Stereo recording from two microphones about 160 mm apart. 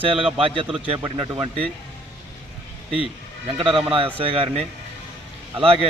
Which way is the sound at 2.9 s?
35° right (ahead or behind).